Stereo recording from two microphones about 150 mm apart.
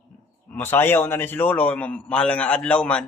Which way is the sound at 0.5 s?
15° left (ahead or behind).